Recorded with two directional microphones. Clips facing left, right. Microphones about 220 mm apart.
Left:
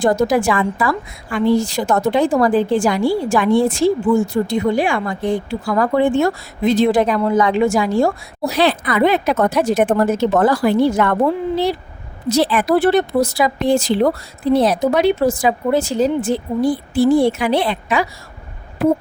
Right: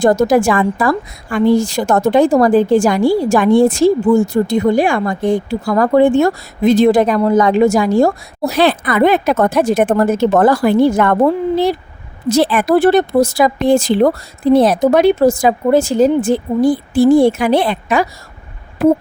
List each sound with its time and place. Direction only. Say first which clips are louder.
0.0 s a woman's voice: right 4 dB; 45° right (ahead or behind)